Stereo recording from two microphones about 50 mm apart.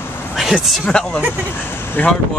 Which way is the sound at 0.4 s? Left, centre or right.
Centre.